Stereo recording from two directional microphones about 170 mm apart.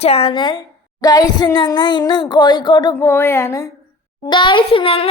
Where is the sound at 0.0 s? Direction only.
35° left (ahead or behind).